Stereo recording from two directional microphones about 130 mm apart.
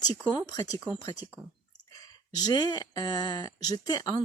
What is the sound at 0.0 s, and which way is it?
Speech, 30° left (ahead or behind).